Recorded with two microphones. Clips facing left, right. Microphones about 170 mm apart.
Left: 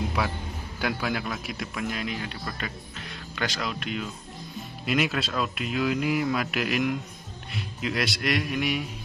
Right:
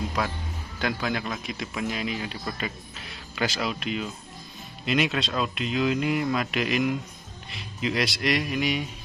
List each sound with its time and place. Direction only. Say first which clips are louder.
0.2 s a man's voice: even; 5° left (ahead or behind)